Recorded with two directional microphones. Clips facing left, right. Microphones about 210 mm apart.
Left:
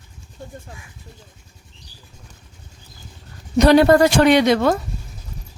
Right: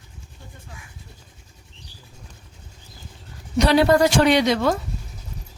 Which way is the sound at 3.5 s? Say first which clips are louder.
Left 4 dB; 45° left (ahead or behind).